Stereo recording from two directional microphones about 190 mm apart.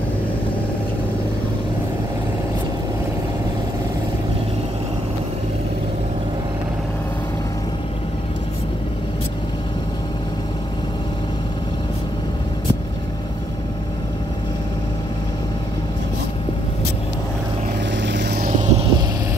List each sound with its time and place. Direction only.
18.0 s vehicle: 65° right (ahead or behind); by 18.9 s 40° right (ahead or behind)